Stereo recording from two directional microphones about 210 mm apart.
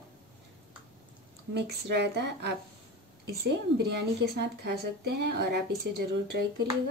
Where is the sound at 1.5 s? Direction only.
55° right (ahead or behind).